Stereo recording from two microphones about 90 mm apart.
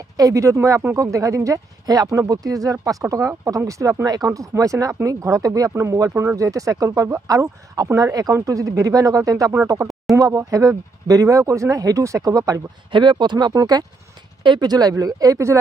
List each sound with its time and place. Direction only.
0.2 s speech: 35° right (ahead or behind)
12.9 s speech: 60° right (ahead or behind); by 15.5 s 35° right (ahead or behind)